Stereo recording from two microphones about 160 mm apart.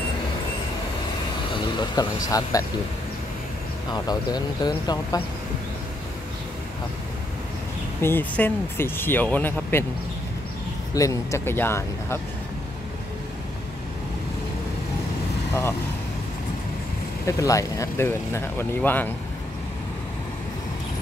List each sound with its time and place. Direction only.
1.5 s speech: 25° left (ahead or behind)
3.9 s speech: 25° left (ahead or behind)
8.0 s speech: 10° left (ahead or behind)
11.0 s speech: 20° left (ahead or behind)
17.3 s speech: 20° left (ahead or behind)